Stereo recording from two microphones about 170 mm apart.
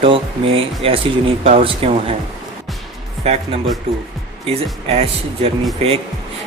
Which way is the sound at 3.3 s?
40° right (ahead or behind).